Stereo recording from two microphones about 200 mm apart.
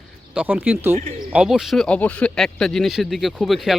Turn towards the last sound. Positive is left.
turn(degrees=0)  # may be behind; listen again after turning